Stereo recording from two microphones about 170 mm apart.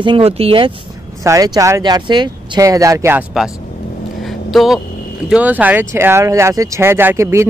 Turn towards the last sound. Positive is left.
turn(degrees=-15)  # may be behind; listen again after turning